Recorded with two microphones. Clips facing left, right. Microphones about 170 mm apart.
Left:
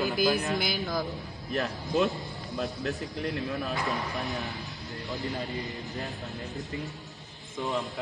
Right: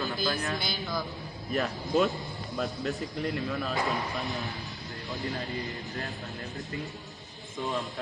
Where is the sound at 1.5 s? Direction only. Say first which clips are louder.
Right 1 dB; centre (ahead or behind).